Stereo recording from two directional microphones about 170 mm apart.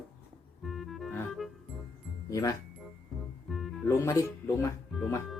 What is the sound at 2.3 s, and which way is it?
Speech, 20° left (ahead or behind).